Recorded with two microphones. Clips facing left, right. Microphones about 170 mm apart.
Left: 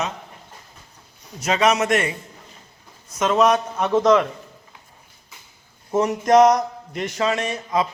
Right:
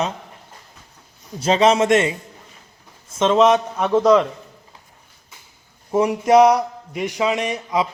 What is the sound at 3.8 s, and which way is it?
Speech, 10° right (ahead or behind).